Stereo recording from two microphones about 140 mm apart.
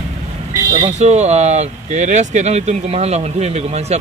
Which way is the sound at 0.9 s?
55° right (ahead or behind).